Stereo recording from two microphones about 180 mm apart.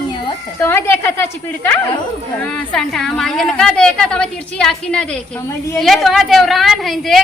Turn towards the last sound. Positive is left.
turn(degrees=0)  # may be behind; listen again after turning